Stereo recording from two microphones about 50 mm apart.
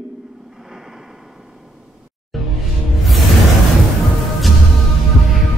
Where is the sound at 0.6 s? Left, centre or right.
Centre.